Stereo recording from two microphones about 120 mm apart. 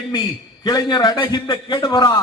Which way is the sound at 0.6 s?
35° left (ahead or behind).